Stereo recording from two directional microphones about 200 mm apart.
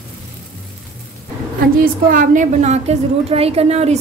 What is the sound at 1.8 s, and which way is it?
A woman's voice, 45° right (ahead or behind).